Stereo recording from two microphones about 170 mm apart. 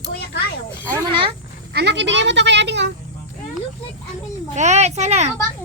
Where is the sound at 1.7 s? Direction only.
85° right.